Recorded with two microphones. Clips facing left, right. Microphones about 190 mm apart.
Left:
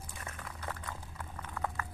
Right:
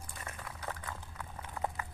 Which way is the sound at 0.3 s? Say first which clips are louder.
Even; 10° right (ahead or behind).